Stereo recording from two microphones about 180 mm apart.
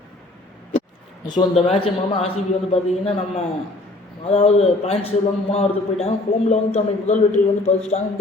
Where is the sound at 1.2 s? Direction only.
30° left (ahead or behind).